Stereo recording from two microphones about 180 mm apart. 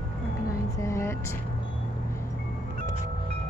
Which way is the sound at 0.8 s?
15° left (ahead or behind).